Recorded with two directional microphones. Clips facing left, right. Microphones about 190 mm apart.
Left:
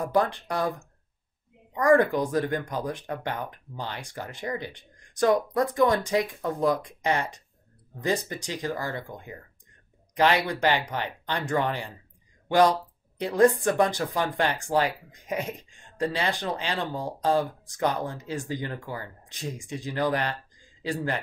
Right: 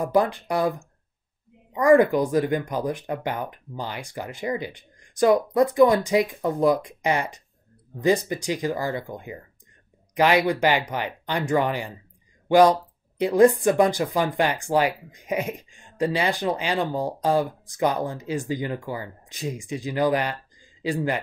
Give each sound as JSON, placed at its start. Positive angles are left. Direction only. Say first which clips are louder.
{"t": 0.0, "sound": "speech", "louder": "right 3 dB", "side_deg": -10}